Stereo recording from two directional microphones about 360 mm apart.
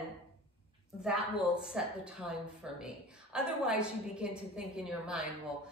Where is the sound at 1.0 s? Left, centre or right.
Centre.